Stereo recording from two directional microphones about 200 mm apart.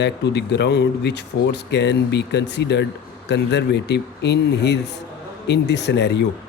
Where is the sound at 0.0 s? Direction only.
60° left (ahead or behind).